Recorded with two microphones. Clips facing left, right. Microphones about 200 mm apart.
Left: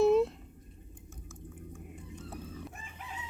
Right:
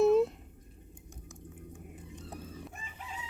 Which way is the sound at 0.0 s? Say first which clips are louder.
Even; centre (ahead or behind).